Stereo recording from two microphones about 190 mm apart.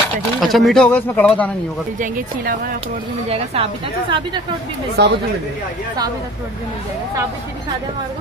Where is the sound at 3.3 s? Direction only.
30° right (ahead or behind).